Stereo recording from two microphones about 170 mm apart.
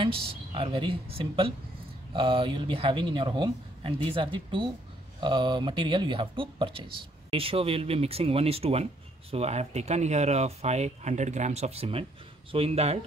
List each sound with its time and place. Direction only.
0.0 s speech: 30° right (ahead or behind)